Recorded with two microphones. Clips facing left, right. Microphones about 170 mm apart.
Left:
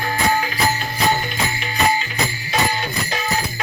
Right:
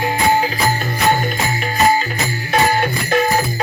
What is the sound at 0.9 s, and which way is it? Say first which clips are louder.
Music: right 3 dB; 45° right (ahead or behind).